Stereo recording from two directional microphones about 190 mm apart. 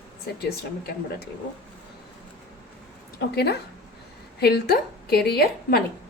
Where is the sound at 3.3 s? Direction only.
60° left (ahead or behind).